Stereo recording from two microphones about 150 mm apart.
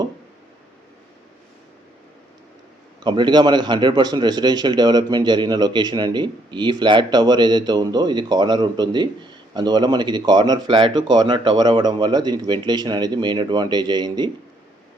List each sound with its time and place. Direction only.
3.0 s a man's voice: 30° right (ahead or behind)